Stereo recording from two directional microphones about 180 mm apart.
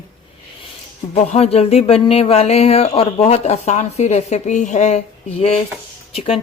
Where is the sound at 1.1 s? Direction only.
35° left (ahead or behind).